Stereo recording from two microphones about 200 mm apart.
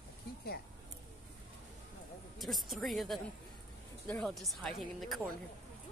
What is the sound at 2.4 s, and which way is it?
Speech, centre (ahead or behind).